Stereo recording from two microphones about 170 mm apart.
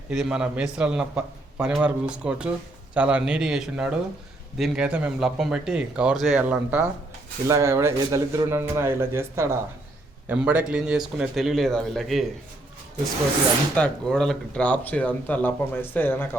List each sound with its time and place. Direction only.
0.1 s speech: 5° right (ahead or behind)
13.7 s speech: 5° left (ahead or behind)